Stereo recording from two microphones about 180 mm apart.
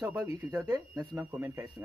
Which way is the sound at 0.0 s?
20° right (ahead or behind).